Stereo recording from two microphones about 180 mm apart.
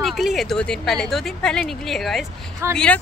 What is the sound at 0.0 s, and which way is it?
A woman's voice, centre (ahead or behind).